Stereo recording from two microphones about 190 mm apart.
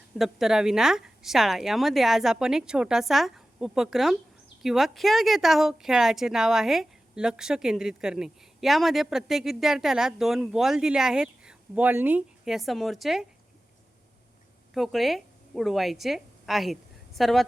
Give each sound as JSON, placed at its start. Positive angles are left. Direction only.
{"t": 0.2, "sound": "a woman's voice", "side_deg": 0}
{"t": 14.7, "sound": "a woman's voice", "side_deg": 0}